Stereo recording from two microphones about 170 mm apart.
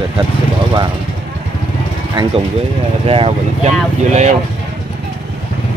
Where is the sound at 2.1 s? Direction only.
25° right (ahead or behind).